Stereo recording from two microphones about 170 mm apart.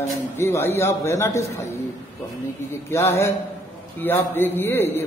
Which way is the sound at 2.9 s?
15° left (ahead or behind).